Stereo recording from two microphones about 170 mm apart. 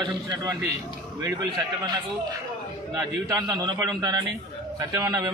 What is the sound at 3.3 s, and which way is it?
A man's voice, 25° right (ahead or behind).